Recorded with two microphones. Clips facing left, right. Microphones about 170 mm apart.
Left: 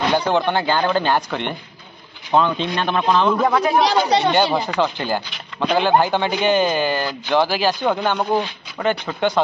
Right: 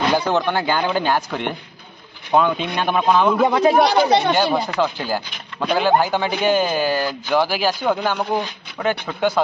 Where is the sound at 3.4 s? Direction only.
25° right (ahead or behind).